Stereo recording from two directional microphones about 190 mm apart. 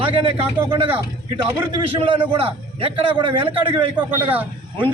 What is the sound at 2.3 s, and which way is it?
A man's voice, 30° right (ahead or behind).